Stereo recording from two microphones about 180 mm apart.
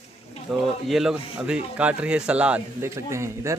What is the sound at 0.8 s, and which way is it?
Speech, centre (ahead or behind).